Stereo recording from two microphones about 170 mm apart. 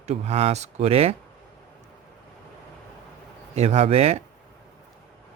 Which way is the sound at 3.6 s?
40° right (ahead or behind).